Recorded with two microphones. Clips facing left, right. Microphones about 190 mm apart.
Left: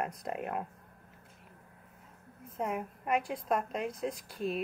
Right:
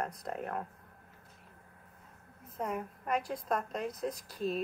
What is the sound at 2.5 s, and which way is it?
A woman's voice, 5° left (ahead or behind).